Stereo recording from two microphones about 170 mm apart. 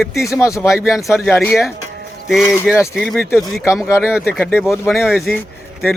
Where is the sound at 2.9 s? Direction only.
Centre (ahead or behind).